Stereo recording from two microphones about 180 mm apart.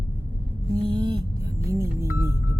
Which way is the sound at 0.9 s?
25° right (ahead or behind).